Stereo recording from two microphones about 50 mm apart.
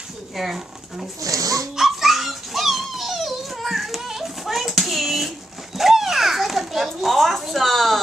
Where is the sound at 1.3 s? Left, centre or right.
Right.